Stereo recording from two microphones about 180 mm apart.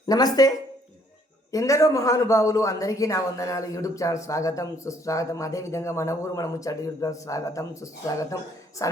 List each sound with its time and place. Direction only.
0.1 s speech: 20° left (ahead or behind)
1.5 s a man's voice: 15° left (ahead or behind)